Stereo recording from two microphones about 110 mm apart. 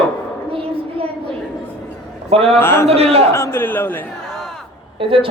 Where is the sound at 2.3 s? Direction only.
65° right (ahead or behind).